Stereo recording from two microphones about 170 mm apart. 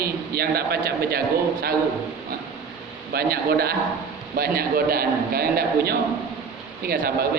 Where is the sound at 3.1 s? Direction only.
65° right (ahead or behind).